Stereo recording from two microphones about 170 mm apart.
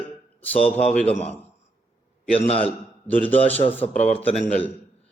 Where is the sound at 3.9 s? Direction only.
40° left (ahead or behind).